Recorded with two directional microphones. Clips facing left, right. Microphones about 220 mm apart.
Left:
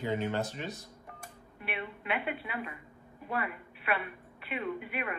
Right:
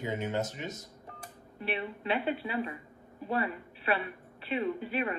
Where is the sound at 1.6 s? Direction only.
30° right (ahead or behind).